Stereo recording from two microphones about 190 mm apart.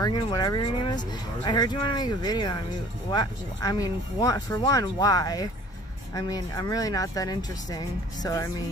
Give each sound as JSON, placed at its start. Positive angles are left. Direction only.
{"t": 0.0, "sound": "speech", "side_deg": 20}